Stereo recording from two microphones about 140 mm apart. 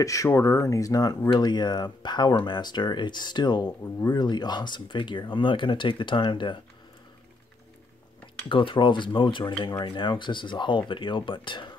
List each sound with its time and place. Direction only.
0.0 s speech: 25° left (ahead or behind)
8.5 s speech: 35° left (ahead or behind)